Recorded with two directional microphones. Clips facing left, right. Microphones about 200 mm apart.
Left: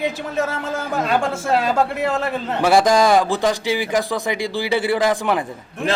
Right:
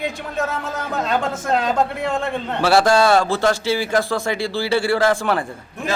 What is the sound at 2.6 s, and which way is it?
Speech, 15° left (ahead or behind).